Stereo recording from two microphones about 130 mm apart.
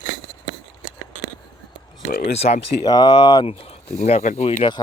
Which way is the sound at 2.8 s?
35° left (ahead or behind).